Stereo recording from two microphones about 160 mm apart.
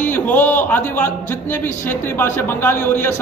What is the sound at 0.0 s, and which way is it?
A man's voice, 10° left (ahead or behind).